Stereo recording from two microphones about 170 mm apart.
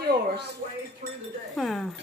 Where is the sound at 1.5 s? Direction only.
Centre (ahead or behind).